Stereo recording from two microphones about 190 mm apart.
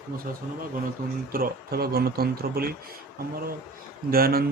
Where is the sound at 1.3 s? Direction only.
50° right (ahead or behind).